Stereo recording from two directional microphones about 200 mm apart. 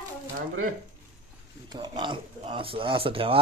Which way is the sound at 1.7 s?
25° right (ahead or behind).